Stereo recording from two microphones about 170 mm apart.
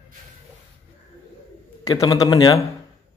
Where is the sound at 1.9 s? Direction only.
20° left (ahead or behind).